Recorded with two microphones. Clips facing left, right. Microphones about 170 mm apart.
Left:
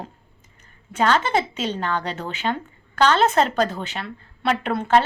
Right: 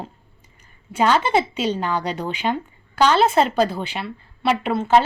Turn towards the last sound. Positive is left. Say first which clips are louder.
# right 2 dB
turn(degrees=-5)  # may be behind; listen again after turning